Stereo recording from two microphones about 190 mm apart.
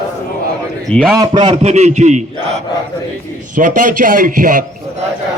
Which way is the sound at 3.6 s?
45° right (ahead or behind).